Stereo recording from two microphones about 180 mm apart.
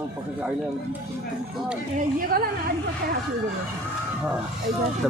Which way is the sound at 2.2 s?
55° right (ahead or behind).